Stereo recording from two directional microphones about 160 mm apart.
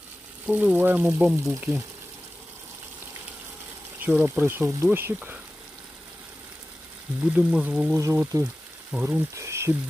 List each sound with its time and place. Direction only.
0.5 s speech: 10° right (ahead or behind)
4.0 s speech: 10° right (ahead or behind)
7.2 s speech: 10° right (ahead or behind)
8.0 s speech: 20° right (ahead or behind)